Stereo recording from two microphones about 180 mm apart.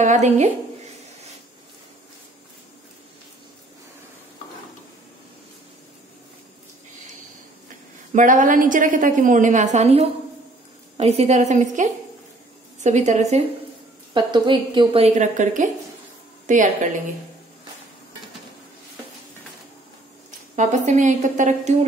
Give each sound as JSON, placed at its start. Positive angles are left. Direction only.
{"t": 0.0, "sound": "a woman's voice", "side_deg": -40}
{"t": 8.1, "sound": "a woman's voice", "side_deg": -45}
{"t": 14.1, "sound": "a woman's voice", "side_deg": -25}
{"t": 20.2, "sound": "speech", "side_deg": -40}